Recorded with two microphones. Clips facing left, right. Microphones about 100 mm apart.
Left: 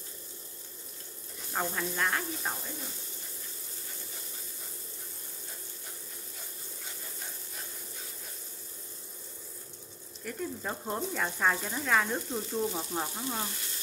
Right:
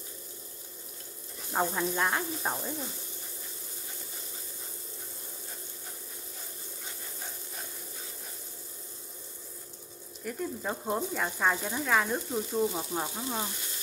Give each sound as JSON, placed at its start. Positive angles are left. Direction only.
{"t": 1.5, "sound": "speech", "side_deg": -15}
{"t": 10.2, "sound": "speech", "side_deg": -5}